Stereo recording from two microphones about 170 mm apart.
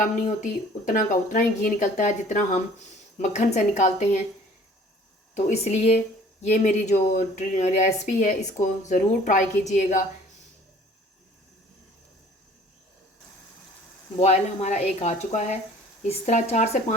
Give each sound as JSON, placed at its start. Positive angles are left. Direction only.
{"t": 0.9, "sound": "speech", "side_deg": 50}
{"t": 5.3, "sound": "speech", "side_deg": 45}
{"t": 14.2, "sound": "speech", "side_deg": 40}